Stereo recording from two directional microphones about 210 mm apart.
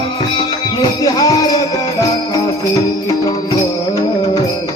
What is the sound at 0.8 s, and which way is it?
Music, 15° left (ahead or behind).